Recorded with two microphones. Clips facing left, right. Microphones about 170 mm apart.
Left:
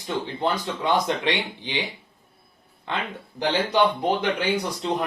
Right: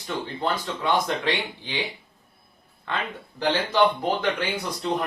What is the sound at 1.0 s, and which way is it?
Speech, 20° left (ahead or behind).